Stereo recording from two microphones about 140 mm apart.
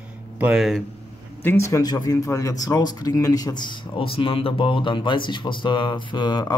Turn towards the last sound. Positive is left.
turn(degrees=30)  # may be behind; listen again after turning